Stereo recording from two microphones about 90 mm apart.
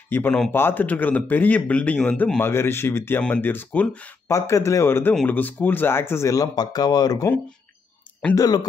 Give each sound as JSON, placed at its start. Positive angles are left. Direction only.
{"t": 0.1, "sound": "speech", "side_deg": 20}
{"t": 2.4, "sound": "speech", "side_deg": 25}
{"t": 4.3, "sound": "speech", "side_deg": 35}